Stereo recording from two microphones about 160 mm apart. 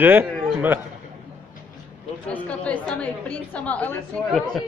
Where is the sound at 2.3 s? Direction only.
10° left (ahead or behind).